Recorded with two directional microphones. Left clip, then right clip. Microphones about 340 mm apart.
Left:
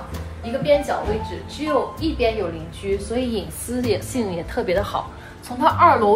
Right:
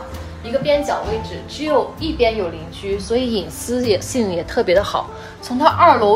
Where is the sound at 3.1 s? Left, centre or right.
Right.